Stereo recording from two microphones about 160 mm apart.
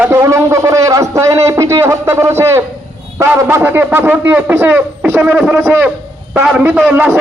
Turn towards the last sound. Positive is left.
turn(degrees=-10)  # may be behind; listen again after turning